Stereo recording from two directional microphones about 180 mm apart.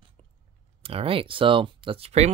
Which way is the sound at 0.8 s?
30° right (ahead or behind).